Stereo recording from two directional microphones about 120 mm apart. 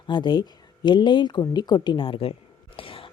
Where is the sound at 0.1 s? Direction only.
40° left (ahead or behind).